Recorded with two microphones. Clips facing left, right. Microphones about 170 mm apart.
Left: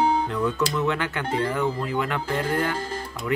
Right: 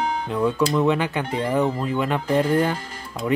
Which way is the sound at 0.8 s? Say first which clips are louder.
Right 4 dB; 15° right (ahead or behind).